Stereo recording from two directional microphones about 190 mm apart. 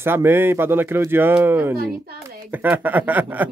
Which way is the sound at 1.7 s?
55° right (ahead or behind).